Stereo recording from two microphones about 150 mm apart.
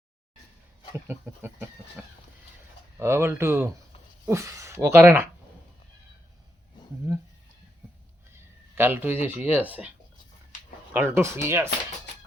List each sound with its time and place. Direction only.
1.0 s speech: 15° right (ahead or behind)
3.0 s speech: 15° right (ahead or behind)
7.1 s speech: 15° right (ahead or behind)
8.3 s a sound: 15° right (ahead or behind)
9.2 s speech: 15° right (ahead or behind)
10.9 s speech: 15° right (ahead or behind)